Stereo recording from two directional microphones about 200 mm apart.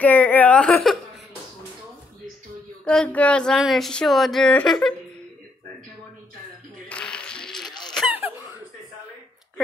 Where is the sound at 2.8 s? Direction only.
5° left (ahead or behind).